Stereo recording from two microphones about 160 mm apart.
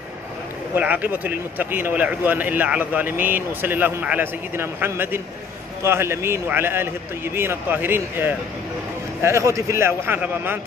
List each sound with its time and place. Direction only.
0.7 s speech: 10° right (ahead or behind)